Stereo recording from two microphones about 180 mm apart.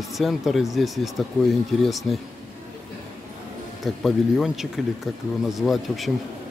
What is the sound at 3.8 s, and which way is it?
Speech, centre (ahead or behind).